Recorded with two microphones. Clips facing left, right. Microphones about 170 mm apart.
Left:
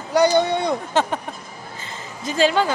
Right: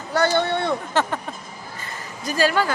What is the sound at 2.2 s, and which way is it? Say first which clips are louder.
Speech: left 2 dB; 20° left (ahead or behind).